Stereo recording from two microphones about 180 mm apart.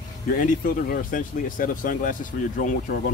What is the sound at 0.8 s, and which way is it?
Speech, 50° left (ahead or behind).